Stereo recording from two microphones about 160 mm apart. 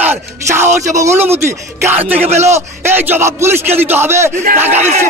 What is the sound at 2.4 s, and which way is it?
A man's voice, 15° right (ahead or behind).